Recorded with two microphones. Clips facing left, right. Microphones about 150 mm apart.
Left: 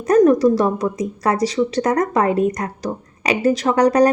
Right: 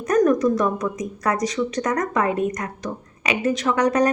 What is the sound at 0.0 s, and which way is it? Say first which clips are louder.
A woman's voice: left 5 dB; 30° left (ahead or behind).